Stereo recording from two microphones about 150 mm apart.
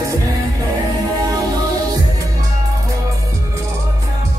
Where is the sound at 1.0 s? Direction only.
25° right (ahead or behind).